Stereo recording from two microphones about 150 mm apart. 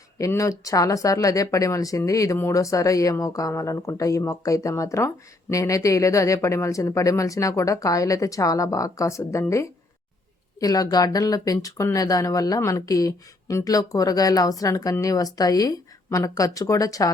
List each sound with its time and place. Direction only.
0.2 s speech: 20° left (ahead or behind)